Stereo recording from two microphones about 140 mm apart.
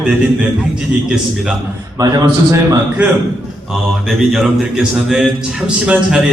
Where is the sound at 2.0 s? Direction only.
25° right (ahead or behind).